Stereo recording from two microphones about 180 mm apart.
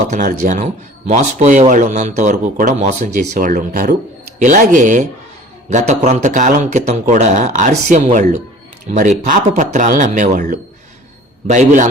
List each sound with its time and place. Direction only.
0.0 s a man's voice: 45° right (ahead or behind)